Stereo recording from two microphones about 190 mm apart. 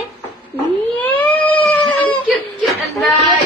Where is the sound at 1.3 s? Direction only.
25° left (ahead or behind).